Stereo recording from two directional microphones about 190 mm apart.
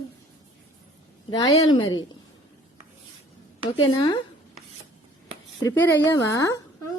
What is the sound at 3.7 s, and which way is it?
Speech, 25° left (ahead or behind).